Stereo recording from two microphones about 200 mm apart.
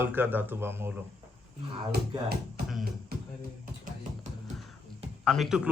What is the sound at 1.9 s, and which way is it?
Speech, 50° right (ahead or behind).